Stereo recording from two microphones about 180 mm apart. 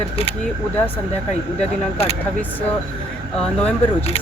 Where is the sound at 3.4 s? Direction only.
5° left (ahead or behind).